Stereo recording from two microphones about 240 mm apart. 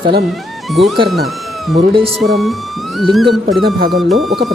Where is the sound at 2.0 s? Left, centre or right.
Centre.